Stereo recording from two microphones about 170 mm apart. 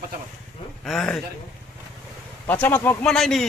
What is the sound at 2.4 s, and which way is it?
A man's voice, 10° left (ahead or behind).